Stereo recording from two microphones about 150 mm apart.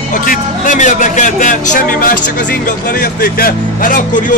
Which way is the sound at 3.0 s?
80° left.